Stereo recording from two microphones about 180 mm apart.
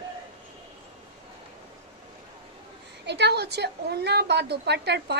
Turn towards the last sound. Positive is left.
turn(degrees=-70)  # may be behind; listen again after turning